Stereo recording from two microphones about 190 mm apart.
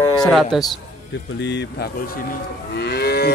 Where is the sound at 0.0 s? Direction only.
20° left (ahead or behind).